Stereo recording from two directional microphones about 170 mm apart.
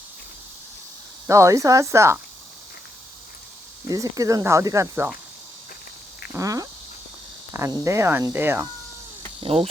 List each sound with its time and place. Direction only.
1.3 s cricket: 20° right (ahead or behind)
3.8 s speech: 20° right (ahead or behind)
6.3 s speech: 20° right (ahead or behind)
7.5 s cricket: 15° right (ahead or behind)
9.4 s cricket: 35° right (ahead or behind)